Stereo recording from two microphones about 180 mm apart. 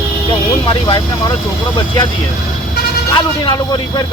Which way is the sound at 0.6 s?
30° left (ahead or behind).